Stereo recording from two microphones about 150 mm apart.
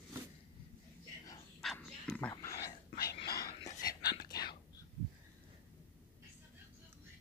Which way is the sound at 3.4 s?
25° left (ahead or behind).